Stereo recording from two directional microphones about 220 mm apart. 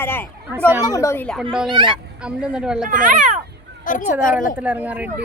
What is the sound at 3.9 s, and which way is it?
Speech, 35° left (ahead or behind).